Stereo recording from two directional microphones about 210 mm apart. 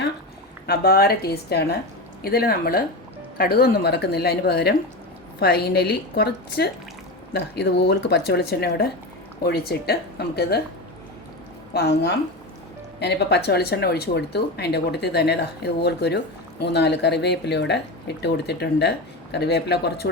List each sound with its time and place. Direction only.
0.7 s speech: 50° left (ahead or behind)
11.7 s speech: 50° left (ahead or behind)